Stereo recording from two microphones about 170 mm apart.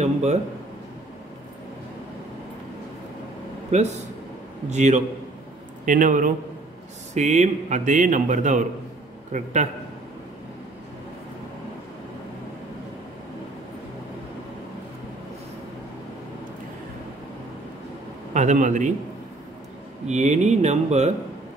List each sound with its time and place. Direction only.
0.0 s a sound: 40° right (ahead or behind)
3.7 s a man's voice: 40° right (ahead or behind)
18.3 s a man's voice: 45° right (ahead or behind)
20.1 s a man's voice: 40° right (ahead or behind)